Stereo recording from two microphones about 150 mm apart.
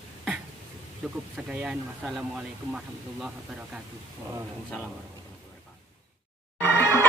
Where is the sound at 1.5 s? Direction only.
5° right (ahead or behind).